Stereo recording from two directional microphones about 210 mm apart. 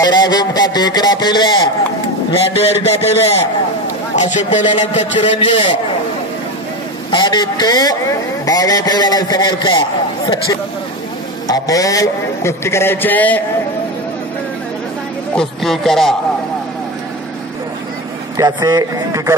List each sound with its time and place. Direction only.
0.0 s a man's voice: 20° left (ahead or behind)
7.1 s a man's voice: 20° left (ahead or behind)
15.3 s speech: centre (ahead or behind)
18.4 s speech: 20° right (ahead or behind)